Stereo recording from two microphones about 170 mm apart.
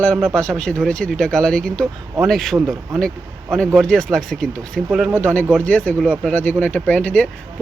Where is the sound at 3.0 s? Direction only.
5° left (ahead or behind).